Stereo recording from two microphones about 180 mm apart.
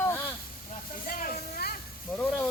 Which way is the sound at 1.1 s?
55° left (ahead or behind).